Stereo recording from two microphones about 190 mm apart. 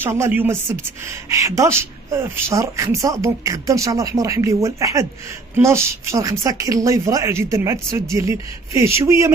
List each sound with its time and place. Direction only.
0.0 s a woman's voice: 10° right (ahead or behind)